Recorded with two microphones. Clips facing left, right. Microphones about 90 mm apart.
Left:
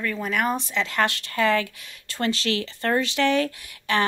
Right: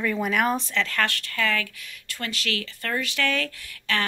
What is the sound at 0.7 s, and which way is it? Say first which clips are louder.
Speech: left 2 dB; 15° left (ahead or behind).